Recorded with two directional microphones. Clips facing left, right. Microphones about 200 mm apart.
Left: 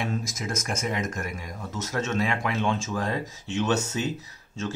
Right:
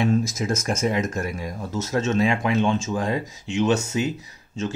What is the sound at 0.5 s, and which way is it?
Speech, 30° right (ahead or behind).